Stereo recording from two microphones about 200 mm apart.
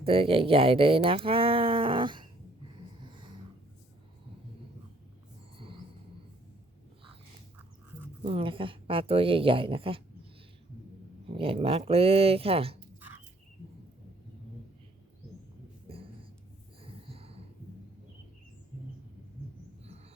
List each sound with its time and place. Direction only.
0.0 s speech: 30° right (ahead or behind)
3.0 s dog: 25° right (ahead or behind)
8.2 s speech: 25° right (ahead or behind)
11.3 s speech: 30° right (ahead or behind)
16.8 s snort: 30° right (ahead or behind)